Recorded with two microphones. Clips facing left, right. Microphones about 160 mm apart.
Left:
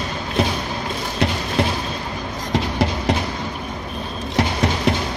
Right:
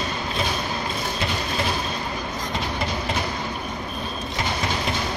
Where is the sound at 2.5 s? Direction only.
75° left (ahead or behind).